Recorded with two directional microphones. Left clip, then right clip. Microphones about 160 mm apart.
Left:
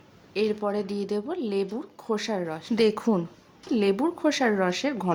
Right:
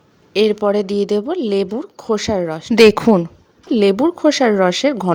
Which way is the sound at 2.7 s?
55° right (ahead or behind).